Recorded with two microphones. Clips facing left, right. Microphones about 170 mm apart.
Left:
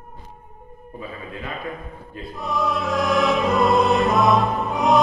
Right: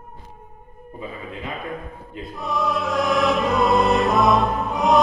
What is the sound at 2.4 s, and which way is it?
Music, centre (ahead or behind).